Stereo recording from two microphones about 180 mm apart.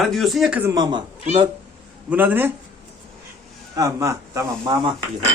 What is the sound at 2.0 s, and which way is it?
Speech, 10° right (ahead or behind).